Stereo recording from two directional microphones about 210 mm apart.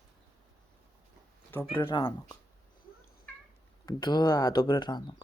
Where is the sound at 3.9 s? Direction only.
20° left (ahead or behind).